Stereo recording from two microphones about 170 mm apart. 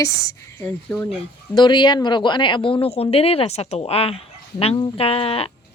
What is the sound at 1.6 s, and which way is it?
Speech, 25° left (ahead or behind).